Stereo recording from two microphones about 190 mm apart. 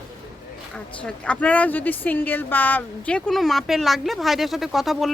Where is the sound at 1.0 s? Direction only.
5° left (ahead or behind).